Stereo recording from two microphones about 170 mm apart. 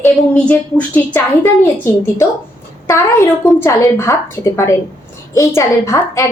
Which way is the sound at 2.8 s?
15° left (ahead or behind).